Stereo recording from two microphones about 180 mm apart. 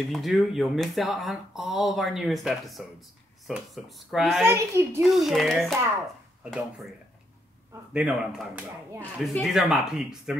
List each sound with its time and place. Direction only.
0.1 s speech: centre (ahead or behind)
4.5 s a child's voice: 15° right (ahead or behind)
5.0 s speech: centre (ahead or behind)
7.9 s speech: 5° right (ahead or behind)